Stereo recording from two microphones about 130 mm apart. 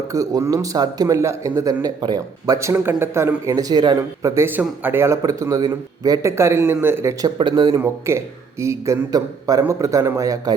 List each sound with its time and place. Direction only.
0.1 s a man's voice: 25° right (ahead or behind)
3.9 s a man's voice: 20° right (ahead or behind)
7.3 s speech: 35° right (ahead or behind)
7.8 s a man's voice: 20° right (ahead or behind)